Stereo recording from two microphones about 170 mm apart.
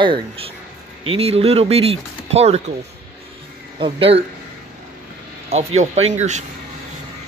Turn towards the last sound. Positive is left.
turn(degrees=-45)  # may be behind; listen again after turning